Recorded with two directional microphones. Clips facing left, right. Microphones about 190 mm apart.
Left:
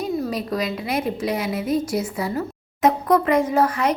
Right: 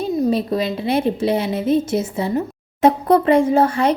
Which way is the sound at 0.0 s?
25° right (ahead or behind).